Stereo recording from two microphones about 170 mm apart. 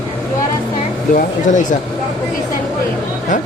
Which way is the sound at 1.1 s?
50° left (ahead or behind).